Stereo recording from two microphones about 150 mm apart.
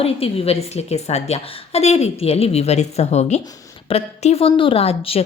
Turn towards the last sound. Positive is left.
turn(degrees=40)  # may be behind; listen again after turning